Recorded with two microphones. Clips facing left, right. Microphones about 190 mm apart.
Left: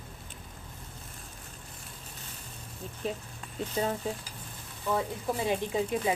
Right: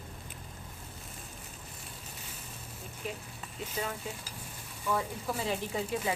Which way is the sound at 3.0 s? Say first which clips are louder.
Left 5 dB; 30° left (ahead or behind).